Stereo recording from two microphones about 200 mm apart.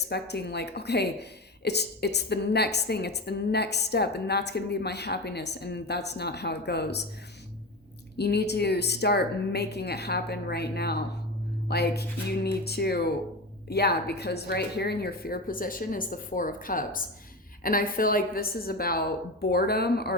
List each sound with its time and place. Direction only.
0.1 s a woman's voice: 55° left (ahead or behind)
8.1 s a woman's voice: 55° left (ahead or behind)